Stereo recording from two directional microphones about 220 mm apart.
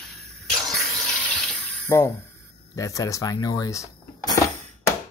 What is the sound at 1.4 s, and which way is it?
Water, 10° left (ahead or behind).